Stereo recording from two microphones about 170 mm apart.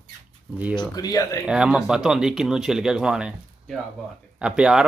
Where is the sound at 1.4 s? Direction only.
5° right (ahead or behind).